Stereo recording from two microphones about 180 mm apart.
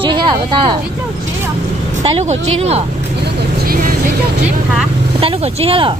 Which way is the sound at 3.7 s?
50° right (ahead or behind).